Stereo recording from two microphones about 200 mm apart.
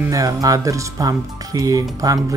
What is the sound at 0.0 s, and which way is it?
Speech, 15° right (ahead or behind).